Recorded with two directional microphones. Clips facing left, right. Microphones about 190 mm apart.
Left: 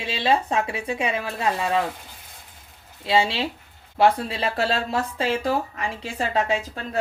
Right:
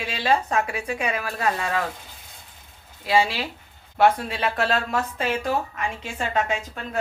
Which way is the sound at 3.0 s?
25° left (ahead or behind).